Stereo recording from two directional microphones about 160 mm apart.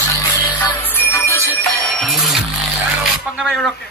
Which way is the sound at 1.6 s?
Centre (ahead or behind).